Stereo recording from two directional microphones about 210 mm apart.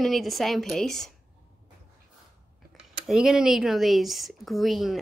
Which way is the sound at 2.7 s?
Centre (ahead or behind).